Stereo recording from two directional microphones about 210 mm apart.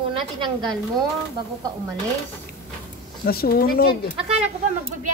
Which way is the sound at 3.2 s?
45° left (ahead or behind).